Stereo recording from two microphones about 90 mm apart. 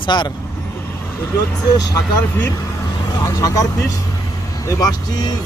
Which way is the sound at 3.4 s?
40° left (ahead or behind).